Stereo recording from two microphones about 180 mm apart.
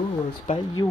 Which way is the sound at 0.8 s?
20° left (ahead or behind).